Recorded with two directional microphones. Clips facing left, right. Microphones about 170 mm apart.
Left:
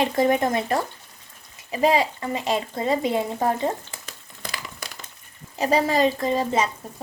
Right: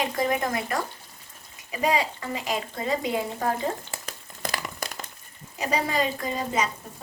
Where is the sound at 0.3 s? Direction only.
30° left (ahead or behind).